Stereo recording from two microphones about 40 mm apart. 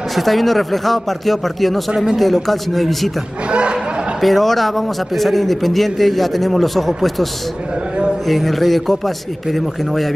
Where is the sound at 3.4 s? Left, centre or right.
Right.